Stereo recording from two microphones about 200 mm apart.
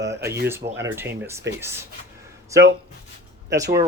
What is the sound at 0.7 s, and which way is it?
Speech, 10° right (ahead or behind).